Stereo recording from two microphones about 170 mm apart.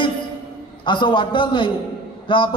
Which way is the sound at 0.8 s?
30° left (ahead or behind).